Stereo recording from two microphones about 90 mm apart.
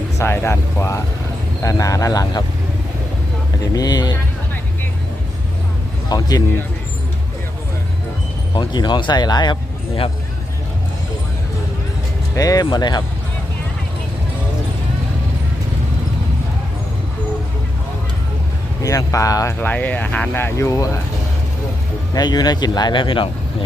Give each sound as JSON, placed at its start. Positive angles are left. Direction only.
{"t": 0.2, "sound": "speech", "side_deg": 30}
{"t": 3.6, "sound": "speech", "side_deg": 45}
{"t": 6.1, "sound": "speech", "side_deg": 45}
{"t": 8.5, "sound": "speech", "side_deg": 55}
{"t": 12.4, "sound": "speech", "side_deg": 45}
{"t": 18.8, "sound": "speech", "side_deg": 35}
{"t": 19.5, "sound": "speech", "side_deg": 20}
{"t": 22.1, "sound": "speech", "side_deg": 50}